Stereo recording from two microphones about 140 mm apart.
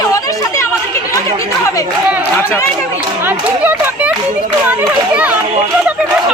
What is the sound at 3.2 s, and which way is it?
Speech, 15° right (ahead or behind).